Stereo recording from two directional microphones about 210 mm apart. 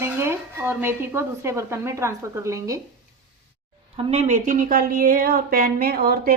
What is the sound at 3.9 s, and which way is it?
Speech, 30° right (ahead or behind).